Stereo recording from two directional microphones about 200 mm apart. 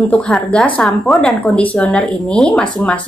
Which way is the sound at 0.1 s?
5° left (ahead or behind).